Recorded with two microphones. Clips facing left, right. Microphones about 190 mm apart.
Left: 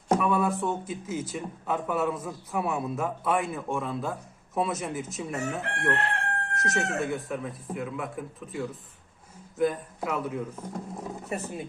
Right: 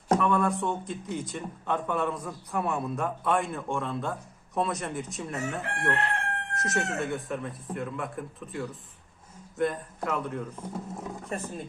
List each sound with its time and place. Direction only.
0.1 s a man's voice: 5° left (ahead or behind)